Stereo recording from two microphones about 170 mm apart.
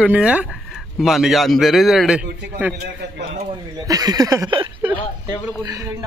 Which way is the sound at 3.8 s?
20° right (ahead or behind).